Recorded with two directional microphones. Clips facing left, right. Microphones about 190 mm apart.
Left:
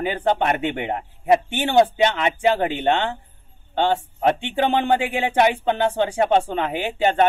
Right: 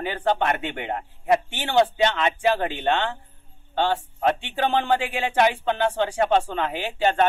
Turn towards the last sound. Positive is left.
turn(degrees=15)  # may be behind; listen again after turning